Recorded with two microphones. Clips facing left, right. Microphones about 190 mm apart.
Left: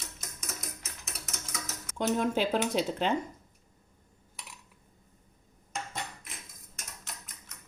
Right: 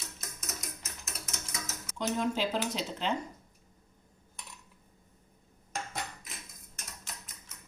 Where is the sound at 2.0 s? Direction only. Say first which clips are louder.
Left 3 dB; 55° left (ahead or behind).